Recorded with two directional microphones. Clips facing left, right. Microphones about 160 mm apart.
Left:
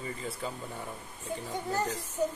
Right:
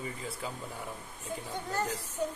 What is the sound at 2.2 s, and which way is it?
Speech, 5° left (ahead or behind).